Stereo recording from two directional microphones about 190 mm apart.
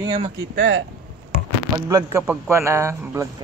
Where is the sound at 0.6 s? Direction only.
75° right (ahead or behind).